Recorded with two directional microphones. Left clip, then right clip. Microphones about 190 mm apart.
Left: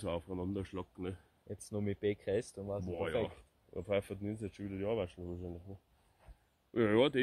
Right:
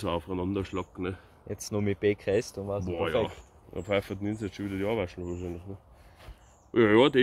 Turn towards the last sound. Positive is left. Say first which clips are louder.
# right 9 dB
turn(degrees=35)  # may be behind; listen again after turning